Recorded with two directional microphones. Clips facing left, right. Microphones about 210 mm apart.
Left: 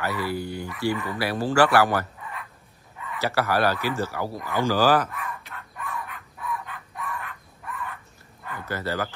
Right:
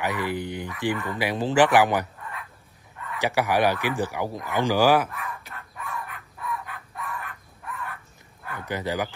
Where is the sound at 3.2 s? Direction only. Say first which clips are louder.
Right 1 dB; 15° right (ahead or behind).